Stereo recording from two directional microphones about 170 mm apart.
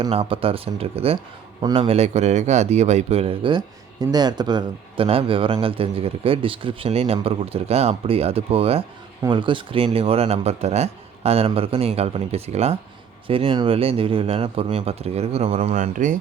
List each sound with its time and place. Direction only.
0.0 s a man's voice: 35° right (ahead or behind)